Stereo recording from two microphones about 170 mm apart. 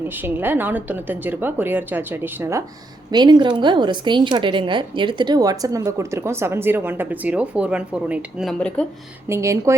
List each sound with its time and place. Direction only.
0.2 s a woman's voice: 10° right (ahead or behind); by 8.9 s 5° left (ahead or behind)
9.3 s a woman's voice: 15° right (ahead or behind)